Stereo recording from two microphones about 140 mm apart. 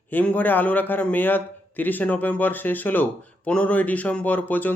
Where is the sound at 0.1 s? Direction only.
10° left (ahead or behind).